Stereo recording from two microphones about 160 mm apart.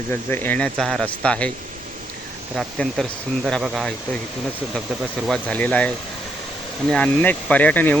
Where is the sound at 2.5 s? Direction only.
Centre (ahead or behind).